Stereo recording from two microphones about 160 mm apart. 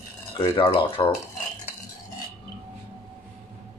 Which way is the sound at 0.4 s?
30° left (ahead or behind).